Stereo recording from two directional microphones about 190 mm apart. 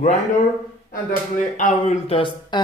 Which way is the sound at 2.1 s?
25° left (ahead or behind).